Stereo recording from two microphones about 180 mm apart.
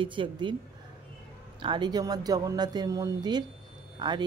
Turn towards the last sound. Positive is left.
turn(degrees=-25)  # may be behind; listen again after turning